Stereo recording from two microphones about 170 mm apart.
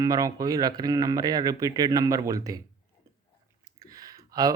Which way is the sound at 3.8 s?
20° right (ahead or behind).